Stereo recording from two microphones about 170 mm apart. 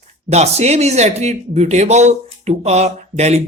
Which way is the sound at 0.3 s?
40° right (ahead or behind).